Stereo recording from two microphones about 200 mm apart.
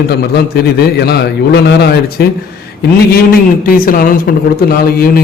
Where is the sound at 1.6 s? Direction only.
55° left (ahead or behind).